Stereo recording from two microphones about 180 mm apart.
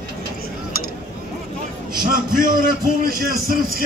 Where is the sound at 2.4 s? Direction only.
55° right (ahead or behind).